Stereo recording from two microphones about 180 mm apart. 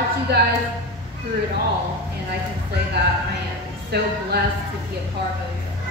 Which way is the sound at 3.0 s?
65° right (ahead or behind).